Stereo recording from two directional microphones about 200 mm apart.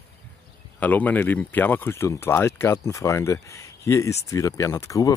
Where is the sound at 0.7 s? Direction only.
10° left (ahead or behind).